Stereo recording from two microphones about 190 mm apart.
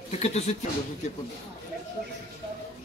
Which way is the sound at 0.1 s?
35° left (ahead or behind).